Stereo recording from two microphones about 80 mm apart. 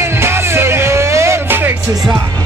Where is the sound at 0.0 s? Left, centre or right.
Right.